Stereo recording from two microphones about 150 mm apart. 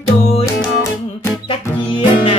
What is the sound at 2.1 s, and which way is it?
Music, 35° left (ahead or behind).